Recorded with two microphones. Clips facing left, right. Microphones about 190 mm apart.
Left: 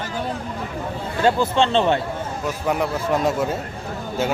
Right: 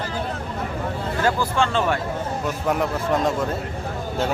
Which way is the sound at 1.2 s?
20° left (ahead or behind).